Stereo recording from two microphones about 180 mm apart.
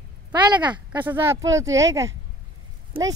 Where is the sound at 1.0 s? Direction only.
15° right (ahead or behind).